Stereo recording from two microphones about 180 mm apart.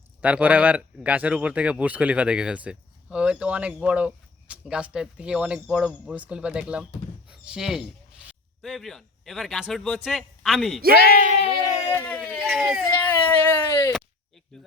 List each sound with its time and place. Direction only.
0.2 s speech: 10° right (ahead or behind)
11.1 s speech: 50° right (ahead or behind)
11.9 s speech: 10° left (ahead or behind)
12.9 s a sound: 10° left (ahead or behind)
14.5 s speech: centre (ahead or behind)